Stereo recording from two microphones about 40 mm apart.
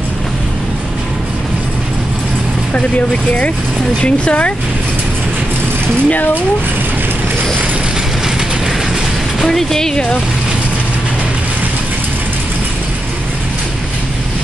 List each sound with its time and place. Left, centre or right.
4.0 s speech: left
6.0 s speech: left
9.5 s speech: centre